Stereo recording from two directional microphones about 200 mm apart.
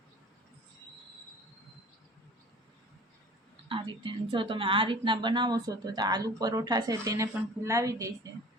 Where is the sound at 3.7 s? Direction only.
25° right (ahead or behind).